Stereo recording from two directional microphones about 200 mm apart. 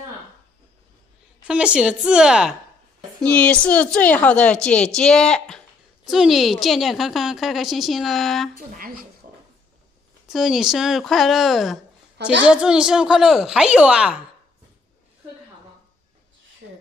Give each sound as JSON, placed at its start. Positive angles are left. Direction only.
{"t": 1.5, "sound": "a woman's voice", "side_deg": -5}
{"t": 8.5, "sound": "speech", "side_deg": -45}
{"t": 10.2, "sound": "a woman's voice", "side_deg": 0}
{"t": 12.2, "sound": "a child's voice", "side_deg": -60}
{"t": 12.4, "sound": "a woman's voice", "side_deg": -5}